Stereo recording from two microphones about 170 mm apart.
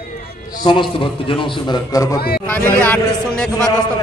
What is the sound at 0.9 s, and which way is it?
A man's voice, 30° left (ahead or behind).